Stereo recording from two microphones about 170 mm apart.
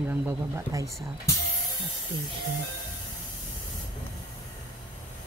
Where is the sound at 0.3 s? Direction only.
15° right (ahead or behind).